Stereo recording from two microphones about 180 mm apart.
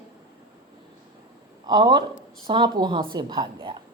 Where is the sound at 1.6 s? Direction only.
25° right (ahead or behind).